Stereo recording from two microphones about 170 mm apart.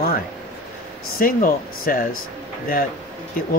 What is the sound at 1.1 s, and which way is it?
Speech, 55° left (ahead or behind).